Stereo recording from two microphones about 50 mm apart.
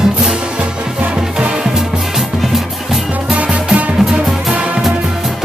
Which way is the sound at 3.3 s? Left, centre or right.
Centre.